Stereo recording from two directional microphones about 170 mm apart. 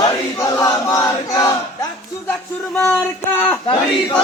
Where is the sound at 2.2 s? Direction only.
5° left (ahead or behind).